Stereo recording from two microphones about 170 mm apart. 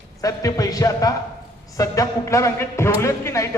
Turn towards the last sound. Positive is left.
turn(degrees=15)  # may be behind; listen again after turning